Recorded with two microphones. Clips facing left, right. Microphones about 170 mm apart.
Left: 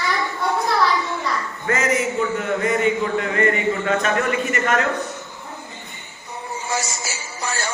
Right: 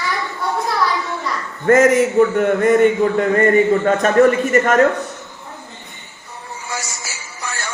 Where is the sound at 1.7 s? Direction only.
45° right (ahead or behind).